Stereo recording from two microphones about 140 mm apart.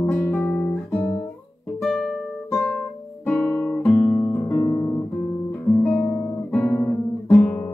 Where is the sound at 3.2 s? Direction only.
10° left (ahead or behind).